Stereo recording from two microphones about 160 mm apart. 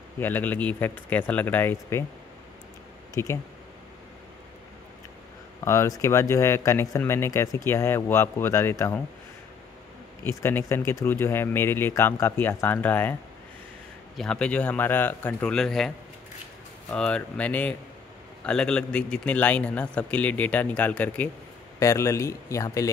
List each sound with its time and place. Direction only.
0.2 s speech: 10° left (ahead or behind)
3.2 s speech: 15° left (ahead or behind)
5.6 s speech: 20° left (ahead or behind)
10.2 s speech: 15° left (ahead or behind)
14.1 s speech: 5° left (ahead or behind)
16.9 s speech: 5° left (ahead or behind)